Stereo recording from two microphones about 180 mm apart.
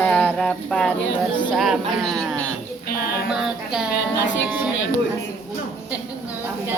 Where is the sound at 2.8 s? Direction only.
55° left (ahead or behind).